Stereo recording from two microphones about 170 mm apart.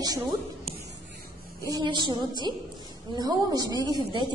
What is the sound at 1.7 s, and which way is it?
A woman's voice, 25° right (ahead or behind).